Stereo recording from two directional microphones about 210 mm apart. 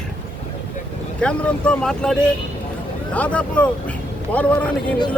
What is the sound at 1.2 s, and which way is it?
Speech, 5° left (ahead or behind).